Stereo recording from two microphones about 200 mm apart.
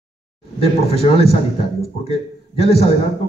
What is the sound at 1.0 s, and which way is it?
A man's voice, 30° left (ahead or behind).